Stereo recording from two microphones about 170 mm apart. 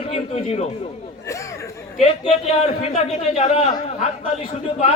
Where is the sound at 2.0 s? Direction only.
40° left (ahead or behind).